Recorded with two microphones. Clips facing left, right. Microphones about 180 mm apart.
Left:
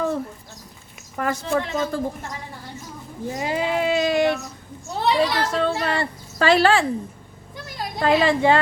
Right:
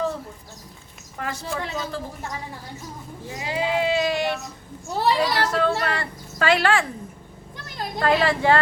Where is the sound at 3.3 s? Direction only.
45° left (ahead or behind).